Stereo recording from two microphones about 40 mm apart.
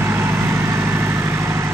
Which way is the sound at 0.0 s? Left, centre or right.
Right.